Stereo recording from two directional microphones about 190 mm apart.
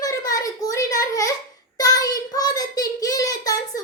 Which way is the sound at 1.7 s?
20° left (ahead or behind).